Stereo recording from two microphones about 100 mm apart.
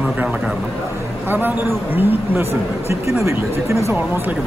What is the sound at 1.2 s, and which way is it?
A man's voice, 20° right (ahead or behind).